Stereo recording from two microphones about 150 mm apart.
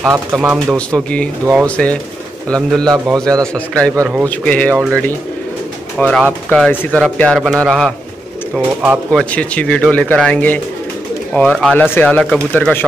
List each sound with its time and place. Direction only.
0.0 s a man's voice: 20° right (ahead or behind)
0.4 s speech: 5° right (ahead or behind)
0.7 s a man's voice: 5° left (ahead or behind)
3.9 s a man's voice: 20° right (ahead or behind)
4.3 s speech: 10° left (ahead or behind)
5.9 s a man's voice: 10° left (ahead or behind)
8.6 s speech: 5° right (ahead or behind)
9.2 s speech: 10° left (ahead or behind)